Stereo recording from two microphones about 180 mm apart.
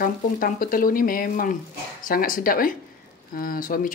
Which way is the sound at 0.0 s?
50° left (ahead or behind).